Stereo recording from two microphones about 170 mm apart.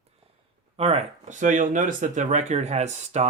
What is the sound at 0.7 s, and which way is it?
Speech, 35° right (ahead or behind).